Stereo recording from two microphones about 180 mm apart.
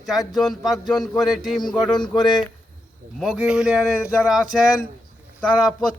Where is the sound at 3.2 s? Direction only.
5° right (ahead or behind).